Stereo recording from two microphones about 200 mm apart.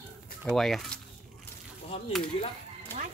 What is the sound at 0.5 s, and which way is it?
Speech, centre (ahead or behind).